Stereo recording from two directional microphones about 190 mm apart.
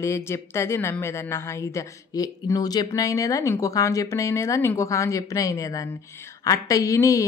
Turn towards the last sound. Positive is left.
turn(degrees=15)  # may be behind; listen again after turning